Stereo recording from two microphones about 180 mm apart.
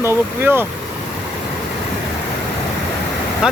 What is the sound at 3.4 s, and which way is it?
Speech, 5° right (ahead or behind).